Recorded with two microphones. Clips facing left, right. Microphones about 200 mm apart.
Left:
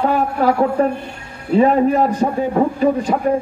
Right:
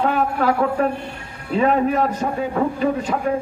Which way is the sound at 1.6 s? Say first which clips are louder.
Left 4 dB; 35° left (ahead or behind).